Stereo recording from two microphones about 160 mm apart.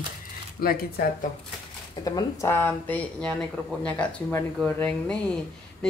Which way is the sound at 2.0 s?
20° left (ahead or behind).